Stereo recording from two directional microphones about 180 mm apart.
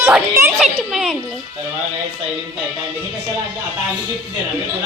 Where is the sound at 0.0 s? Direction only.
15° right (ahead or behind).